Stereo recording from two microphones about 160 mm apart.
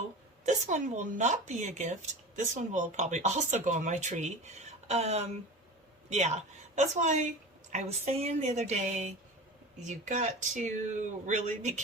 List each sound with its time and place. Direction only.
0.4 s speech: 50° right (ahead or behind)